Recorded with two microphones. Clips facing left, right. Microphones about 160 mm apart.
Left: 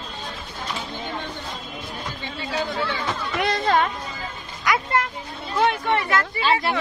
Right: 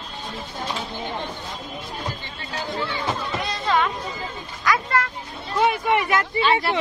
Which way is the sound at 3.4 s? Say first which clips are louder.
Left 2 dB; 50° left (ahead or behind).